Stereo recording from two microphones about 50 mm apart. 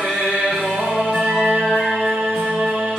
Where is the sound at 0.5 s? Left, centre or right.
Centre.